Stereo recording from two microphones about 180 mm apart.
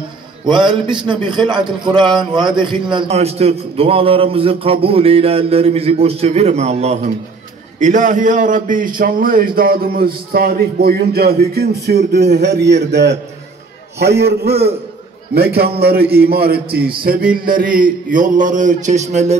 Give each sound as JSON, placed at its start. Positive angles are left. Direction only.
{"t": 0.5, "sound": "a man's voice", "side_deg": -25}